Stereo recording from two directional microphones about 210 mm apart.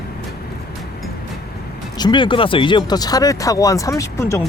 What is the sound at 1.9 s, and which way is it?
Speech, 20° left (ahead or behind).